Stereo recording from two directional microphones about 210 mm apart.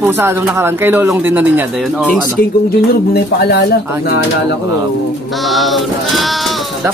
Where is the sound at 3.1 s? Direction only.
50° left (ahead or behind).